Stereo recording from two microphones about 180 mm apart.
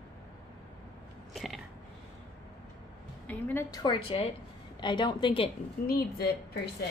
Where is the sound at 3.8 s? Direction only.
30° left (ahead or behind).